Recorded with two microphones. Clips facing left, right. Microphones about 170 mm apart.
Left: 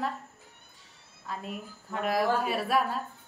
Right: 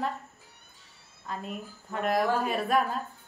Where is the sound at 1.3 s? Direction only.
5° left (ahead or behind).